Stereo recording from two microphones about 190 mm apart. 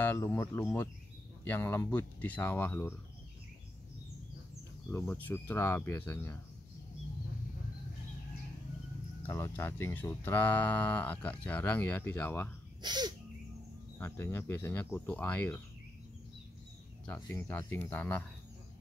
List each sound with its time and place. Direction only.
0.0 s speech: 10° left (ahead or behind)
4.9 s speech: 15° left (ahead or behind)
9.2 s speech: 10° left (ahead or behind)
12.8 s sneeze: 20° right (ahead or behind)
13.9 s speech: 10° left (ahead or behind)
17.0 s speech: 10° left (ahead or behind)